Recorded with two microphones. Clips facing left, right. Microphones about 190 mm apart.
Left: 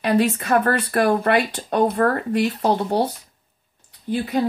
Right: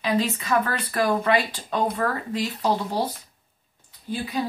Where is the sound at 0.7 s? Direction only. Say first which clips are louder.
Left 5 dB; 70° left (ahead or behind).